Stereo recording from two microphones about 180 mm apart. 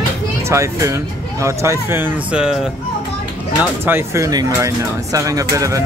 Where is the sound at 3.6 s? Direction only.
10° right (ahead or behind).